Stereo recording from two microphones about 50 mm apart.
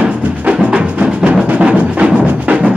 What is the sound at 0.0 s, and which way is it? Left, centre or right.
Music, right.